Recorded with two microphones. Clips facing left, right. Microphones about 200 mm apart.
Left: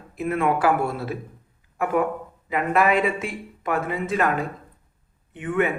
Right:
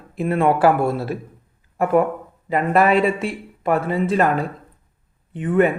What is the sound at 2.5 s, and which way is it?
Speech, 35° right (ahead or behind).